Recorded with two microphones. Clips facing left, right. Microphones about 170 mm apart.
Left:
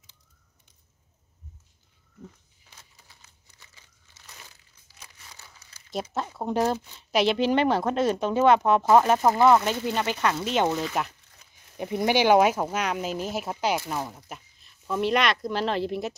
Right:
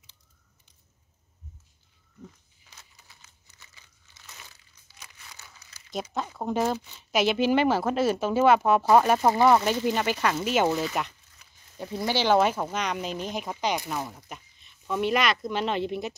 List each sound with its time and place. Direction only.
3.1 s crumpling: 35° left (ahead or behind)
5.0 s crumpling: 30° left (ahead or behind)
6.3 s speech: centre (ahead or behind)
11.7 s speech: 20° left (ahead or behind); by 16.2 s centre (ahead or behind)